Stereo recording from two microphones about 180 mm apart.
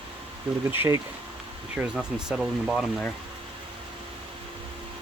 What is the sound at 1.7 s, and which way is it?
Speech, 5° right (ahead or behind).